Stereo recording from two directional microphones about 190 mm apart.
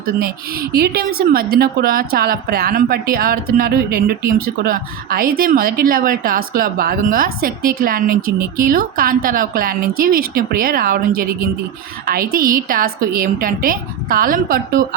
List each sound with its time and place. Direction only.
0.7 s a woman's voice: 55° right (ahead or behind)